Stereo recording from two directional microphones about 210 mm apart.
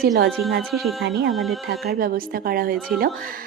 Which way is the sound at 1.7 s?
45° right (ahead or behind).